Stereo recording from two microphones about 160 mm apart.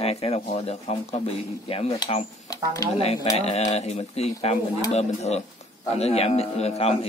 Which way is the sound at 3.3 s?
40° left (ahead or behind).